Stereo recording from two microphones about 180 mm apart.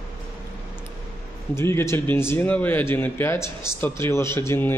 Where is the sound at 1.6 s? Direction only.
15° left (ahead or behind).